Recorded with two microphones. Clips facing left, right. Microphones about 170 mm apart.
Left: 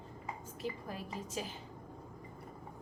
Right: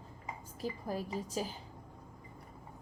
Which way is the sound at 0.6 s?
35° right (ahead or behind).